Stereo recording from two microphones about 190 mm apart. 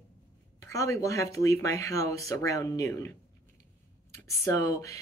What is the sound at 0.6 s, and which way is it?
Speech, 15° left (ahead or behind).